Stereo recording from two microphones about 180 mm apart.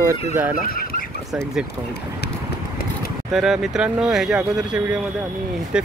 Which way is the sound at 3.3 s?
Centre (ahead or behind).